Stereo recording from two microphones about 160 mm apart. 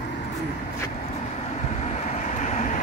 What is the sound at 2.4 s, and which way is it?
Vehicle, 50° left (ahead or behind).